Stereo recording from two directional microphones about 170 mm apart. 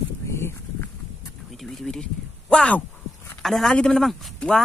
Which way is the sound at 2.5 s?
5° left (ahead or behind).